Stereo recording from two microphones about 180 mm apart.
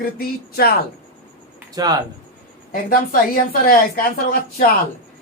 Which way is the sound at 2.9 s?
55° left (ahead or behind).